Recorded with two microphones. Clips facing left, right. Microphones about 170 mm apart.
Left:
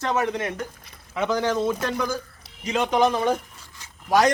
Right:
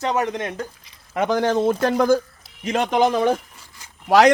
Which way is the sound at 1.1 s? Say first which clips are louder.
Right 4 dB; 50° right (ahead or behind).